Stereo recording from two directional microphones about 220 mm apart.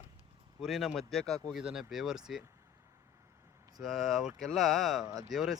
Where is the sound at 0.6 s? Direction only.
Centre (ahead or behind).